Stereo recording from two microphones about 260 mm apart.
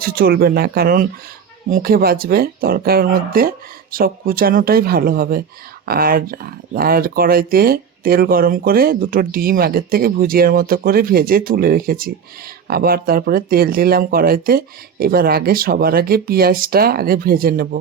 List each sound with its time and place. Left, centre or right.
0.0 s speech: right